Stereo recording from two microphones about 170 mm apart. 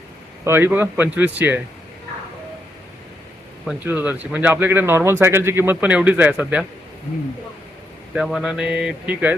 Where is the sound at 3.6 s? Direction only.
10° right (ahead or behind).